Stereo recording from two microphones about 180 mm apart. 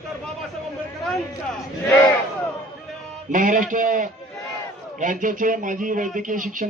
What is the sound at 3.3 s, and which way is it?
Speech, 45° right (ahead or behind).